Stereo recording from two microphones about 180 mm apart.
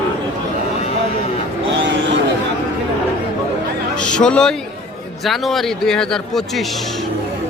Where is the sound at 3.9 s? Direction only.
5° left (ahead or behind).